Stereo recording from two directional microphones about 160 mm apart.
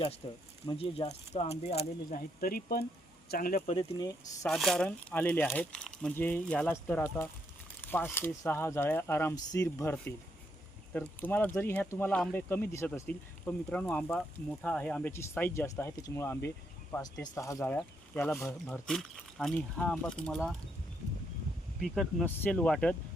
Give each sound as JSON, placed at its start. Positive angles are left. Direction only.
{"t": 0.2, "sound": "speech", "side_deg": 35}
{"t": 2.4, "sound": "speech", "side_deg": 65}
{"t": 3.8, "sound": "speech", "side_deg": 25}
{"t": 4.4, "sound": "speech", "side_deg": 0}
{"t": 17.7, "sound": "speech", "side_deg": 5}
{"t": 18.9, "sound": "speech", "side_deg": 0}
{"t": 21.8, "sound": "speech", "side_deg": 0}